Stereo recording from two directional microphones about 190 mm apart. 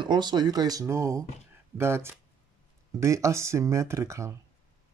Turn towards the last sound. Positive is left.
turn(degrees=-15)  # may be behind; listen again after turning